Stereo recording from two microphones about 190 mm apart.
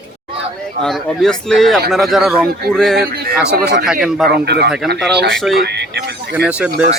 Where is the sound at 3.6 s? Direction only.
50° right (ahead or behind).